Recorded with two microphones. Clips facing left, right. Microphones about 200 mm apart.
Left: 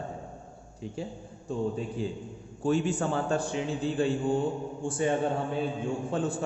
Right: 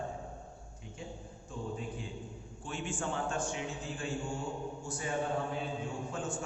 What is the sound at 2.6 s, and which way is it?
A man's voice, 40° left (ahead or behind).